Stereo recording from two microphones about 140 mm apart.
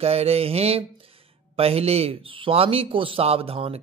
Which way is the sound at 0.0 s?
45° right (ahead or behind).